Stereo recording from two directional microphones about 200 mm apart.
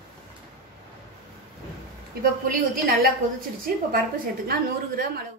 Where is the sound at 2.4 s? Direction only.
45° right (ahead or behind).